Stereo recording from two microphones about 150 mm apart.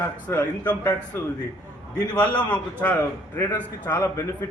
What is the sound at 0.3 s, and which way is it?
A man's voice, 15° left (ahead or behind).